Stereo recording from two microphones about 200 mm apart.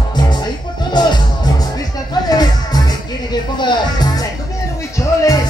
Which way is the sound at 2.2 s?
20° left (ahead or behind).